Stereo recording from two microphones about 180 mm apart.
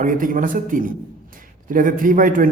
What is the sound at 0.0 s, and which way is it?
Speech, 50° right (ahead or behind).